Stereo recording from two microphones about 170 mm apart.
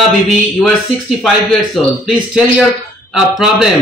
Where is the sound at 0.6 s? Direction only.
Centre (ahead or behind).